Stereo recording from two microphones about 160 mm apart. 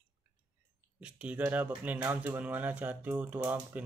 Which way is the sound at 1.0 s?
10° right (ahead or behind).